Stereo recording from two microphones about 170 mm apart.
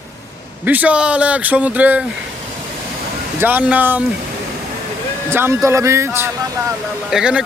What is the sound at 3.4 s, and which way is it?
Speech, 10° right (ahead or behind).